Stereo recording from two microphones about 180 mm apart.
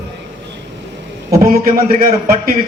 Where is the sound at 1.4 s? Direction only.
55° right (ahead or behind).